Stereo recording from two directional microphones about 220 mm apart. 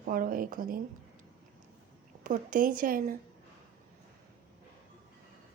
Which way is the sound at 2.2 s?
35° right (ahead or behind).